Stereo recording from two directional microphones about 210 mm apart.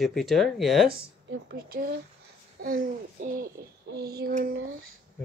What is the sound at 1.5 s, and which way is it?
Speech, 45° right (ahead or behind).